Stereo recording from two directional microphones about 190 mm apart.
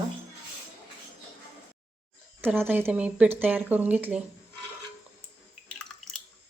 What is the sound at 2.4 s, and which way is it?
A woman's voice, 10° right (ahead or behind).